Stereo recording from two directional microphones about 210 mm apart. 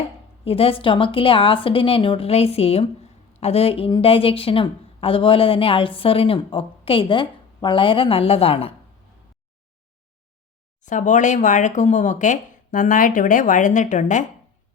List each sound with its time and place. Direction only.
0.4 s a woman's voice: 25° left (ahead or behind)
10.8 s speech: 35° left (ahead or behind)